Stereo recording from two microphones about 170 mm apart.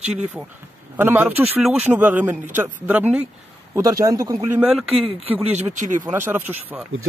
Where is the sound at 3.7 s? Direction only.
20° right (ahead or behind).